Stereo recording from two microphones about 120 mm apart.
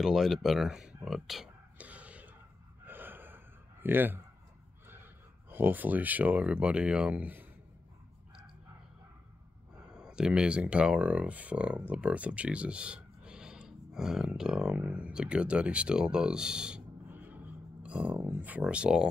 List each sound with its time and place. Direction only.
0.0 s speech: 5° right (ahead or behind)
1.0 s a sound: centre (ahead or behind)
2.8 s gasp: 15° right (ahead or behind)
5.5 s speech: 15° right (ahead or behind)
9.8 s speech: 5° right (ahead or behind)